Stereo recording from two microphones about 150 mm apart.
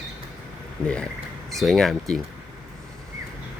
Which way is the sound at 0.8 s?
5° left (ahead or behind).